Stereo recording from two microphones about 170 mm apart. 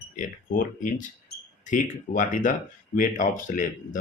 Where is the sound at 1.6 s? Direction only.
50° left (ahead or behind).